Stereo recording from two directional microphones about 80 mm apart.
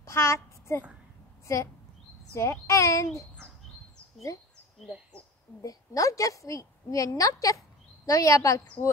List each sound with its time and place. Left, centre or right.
0.0 s child singing: left
2.3 s a child's voice: left
5.6 s a woman's voice: left